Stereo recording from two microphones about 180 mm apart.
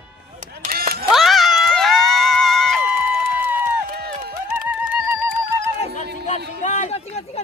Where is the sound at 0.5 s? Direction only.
55° right (ahead or behind).